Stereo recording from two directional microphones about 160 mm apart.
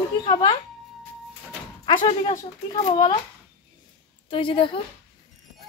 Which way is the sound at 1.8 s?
30° left (ahead or behind).